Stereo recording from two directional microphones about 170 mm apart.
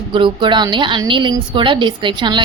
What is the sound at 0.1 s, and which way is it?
A woman's voice, 30° right (ahead or behind).